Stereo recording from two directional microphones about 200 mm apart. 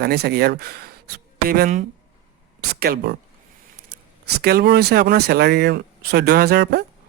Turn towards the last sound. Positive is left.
turn(degrees=-55)  # may be behind; listen again after turning